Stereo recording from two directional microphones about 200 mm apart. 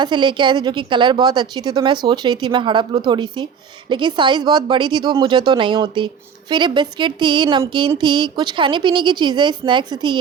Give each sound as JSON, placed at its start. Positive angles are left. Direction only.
{"t": 0.0, "sound": "a woman's voice", "side_deg": -25}